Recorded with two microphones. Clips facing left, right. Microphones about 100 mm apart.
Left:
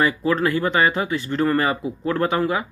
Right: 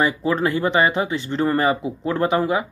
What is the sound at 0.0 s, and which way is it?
Speech, 20° right (ahead or behind).